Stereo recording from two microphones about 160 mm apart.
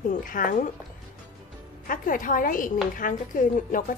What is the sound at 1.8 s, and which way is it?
A woman's voice, 60° left (ahead or behind).